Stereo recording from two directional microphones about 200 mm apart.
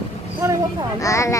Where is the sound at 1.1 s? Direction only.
15° left (ahead or behind).